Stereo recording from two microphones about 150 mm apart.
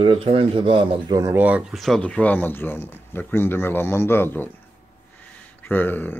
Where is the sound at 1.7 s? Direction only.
Centre (ahead or behind).